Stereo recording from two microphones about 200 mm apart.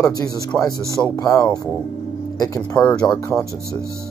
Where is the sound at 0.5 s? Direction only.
5° left (ahead or behind).